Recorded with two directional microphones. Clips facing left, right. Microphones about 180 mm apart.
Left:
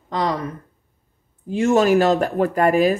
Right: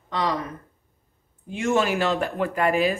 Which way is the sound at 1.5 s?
35° left (ahead or behind).